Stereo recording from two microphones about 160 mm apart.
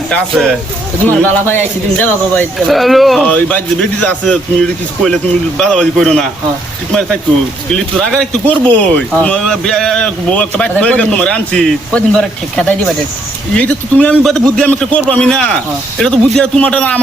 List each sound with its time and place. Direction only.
0.1 s speech: 5° left (ahead or behind)
2.6 s speech: centre (ahead or behind)
7.9 s speech: centre (ahead or behind)